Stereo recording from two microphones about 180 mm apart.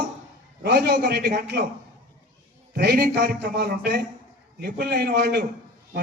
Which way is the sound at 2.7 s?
65° right (ahead or behind).